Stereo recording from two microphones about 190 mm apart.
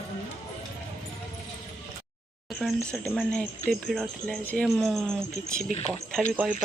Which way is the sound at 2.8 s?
5° left (ahead or behind).